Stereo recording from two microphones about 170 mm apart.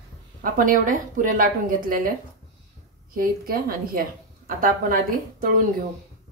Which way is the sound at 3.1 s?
60° right (ahead or behind).